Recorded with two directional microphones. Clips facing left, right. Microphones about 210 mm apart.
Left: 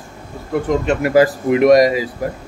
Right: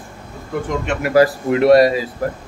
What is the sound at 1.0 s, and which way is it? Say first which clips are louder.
Speech: even; 20° left (ahead or behind).